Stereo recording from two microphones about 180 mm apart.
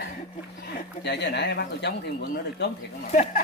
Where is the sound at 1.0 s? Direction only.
70° left (ahead or behind).